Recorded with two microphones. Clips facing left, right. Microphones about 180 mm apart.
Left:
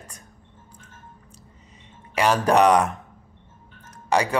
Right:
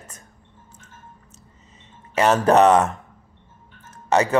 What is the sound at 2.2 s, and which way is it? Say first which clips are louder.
Speech: right 3 dB; 30° right (ahead or behind).